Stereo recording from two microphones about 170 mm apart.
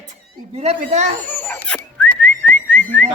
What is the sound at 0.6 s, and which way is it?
Speech, 40° right (ahead or behind).